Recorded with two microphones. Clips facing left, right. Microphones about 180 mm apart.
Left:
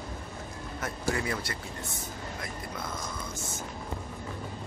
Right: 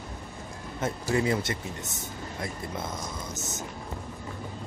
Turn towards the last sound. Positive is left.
turn(degrees=-25)  # may be behind; listen again after turning